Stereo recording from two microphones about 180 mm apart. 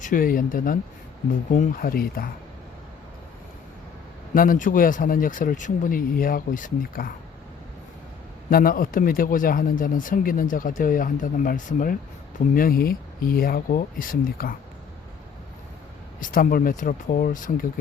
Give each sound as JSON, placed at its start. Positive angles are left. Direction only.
{"t": 0.0, "sound": "speech", "side_deg": 50}
{"t": 4.4, "sound": "speech", "side_deg": 50}
{"t": 8.4, "sound": "speech", "side_deg": 50}
{"t": 16.2, "sound": "speech", "side_deg": 50}